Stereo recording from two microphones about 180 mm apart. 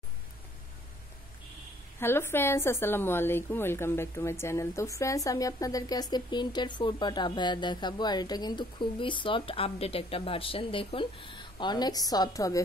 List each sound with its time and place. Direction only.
2.0 s a woman's voice: 15° left (ahead or behind)